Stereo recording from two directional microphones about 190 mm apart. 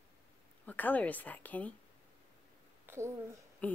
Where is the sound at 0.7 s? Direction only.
10° left (ahead or behind).